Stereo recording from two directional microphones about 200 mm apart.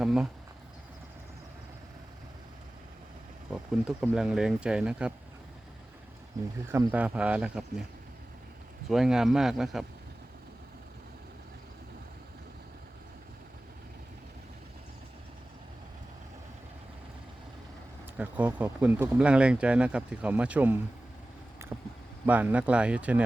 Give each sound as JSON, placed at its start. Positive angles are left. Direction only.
{"t": 0.0, "sound": "speech", "side_deg": -5}
{"t": 4.1, "sound": "speech", "side_deg": -5}
{"t": 6.3, "sound": "speech", "side_deg": -20}
{"t": 8.9, "sound": "speech", "side_deg": 0}
{"t": 18.2, "sound": "speech", "side_deg": -5}
{"t": 21.6, "sound": "vehicle", "side_deg": -15}
{"t": 22.3, "sound": "speech", "side_deg": -10}